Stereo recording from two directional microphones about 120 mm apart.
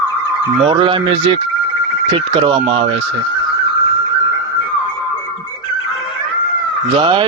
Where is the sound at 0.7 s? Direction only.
45° right (ahead or behind).